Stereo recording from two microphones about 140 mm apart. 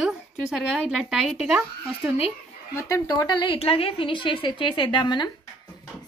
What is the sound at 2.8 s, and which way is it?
A woman's voice, 25° left (ahead or behind).